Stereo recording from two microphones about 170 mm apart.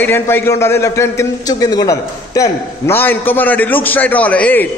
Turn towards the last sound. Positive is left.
turn(degrees=10)  # may be behind; listen again after turning